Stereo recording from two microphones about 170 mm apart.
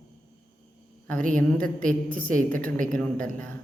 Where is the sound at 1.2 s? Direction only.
50° right (ahead or behind).